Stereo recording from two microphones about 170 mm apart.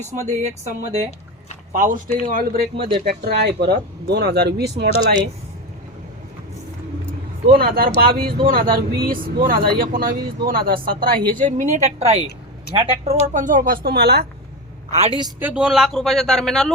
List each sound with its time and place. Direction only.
0.3 s a woman's voice: 45° right (ahead or behind)
1.7 s a woman's voice: 50° right (ahead or behind)
2.7 s speech: 30° right (ahead or behind)
3.0 s speech: 70° right (ahead or behind)
7.5 s a woman's voice: 60° right (ahead or behind); by 13.1 s 30° right (ahead or behind)
13.3 s speech: 50° right (ahead or behind); by 14.3 s 70° right (ahead or behind)
14.9 s speech: 35° right (ahead or behind)
15.4 s speech: 10° right (ahead or behind)